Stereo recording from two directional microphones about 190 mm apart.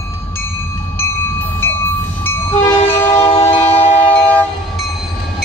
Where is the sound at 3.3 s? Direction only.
30° left (ahead or behind).